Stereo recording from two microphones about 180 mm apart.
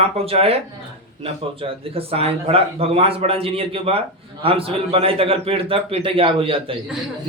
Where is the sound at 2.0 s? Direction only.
30° right (ahead or behind).